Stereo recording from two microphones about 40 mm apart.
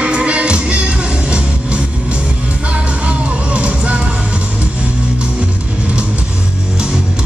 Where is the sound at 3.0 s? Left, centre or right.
Right.